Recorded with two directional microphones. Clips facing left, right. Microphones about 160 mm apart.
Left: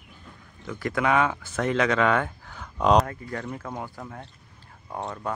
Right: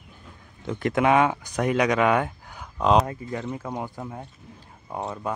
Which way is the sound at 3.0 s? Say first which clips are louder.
Right 3 dB; 20° right (ahead or behind).